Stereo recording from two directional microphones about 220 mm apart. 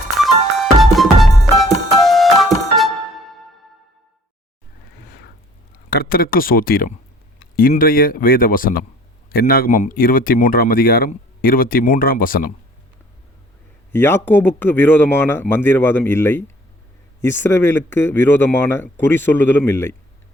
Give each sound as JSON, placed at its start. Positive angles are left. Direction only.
{"t": 0.2, "sound": "music", "side_deg": 0}
{"t": 5.9, "sound": "speech", "side_deg": 45}
{"t": 13.9, "sound": "speech", "side_deg": 10}